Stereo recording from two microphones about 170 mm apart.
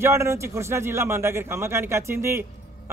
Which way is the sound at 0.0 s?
15° right (ahead or behind).